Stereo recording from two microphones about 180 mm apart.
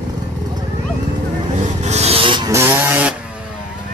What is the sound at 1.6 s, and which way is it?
Vehicle, 40° right (ahead or behind).